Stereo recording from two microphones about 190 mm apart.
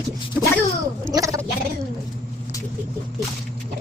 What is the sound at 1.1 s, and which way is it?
Gargling, 15° right (ahead or behind).